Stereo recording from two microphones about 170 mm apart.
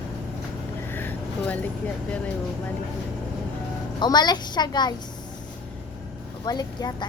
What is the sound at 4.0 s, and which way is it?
Speech, 25° left (ahead or behind).